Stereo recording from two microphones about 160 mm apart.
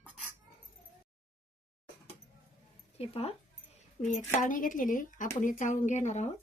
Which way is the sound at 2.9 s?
40° left (ahead or behind).